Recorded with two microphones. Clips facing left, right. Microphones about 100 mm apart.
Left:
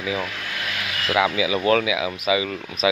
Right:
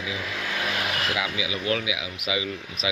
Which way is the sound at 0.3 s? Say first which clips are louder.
Right 2 dB; 20° right (ahead or behind).